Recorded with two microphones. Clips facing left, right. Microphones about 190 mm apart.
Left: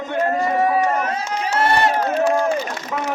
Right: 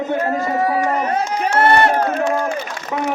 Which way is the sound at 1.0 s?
55° right (ahead or behind).